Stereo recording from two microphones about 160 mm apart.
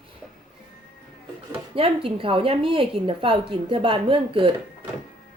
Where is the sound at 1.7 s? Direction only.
35° right (ahead or behind).